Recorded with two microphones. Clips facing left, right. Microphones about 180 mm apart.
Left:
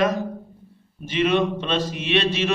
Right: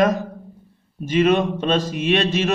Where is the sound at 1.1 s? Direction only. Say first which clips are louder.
Right 3 dB; 45° right (ahead or behind).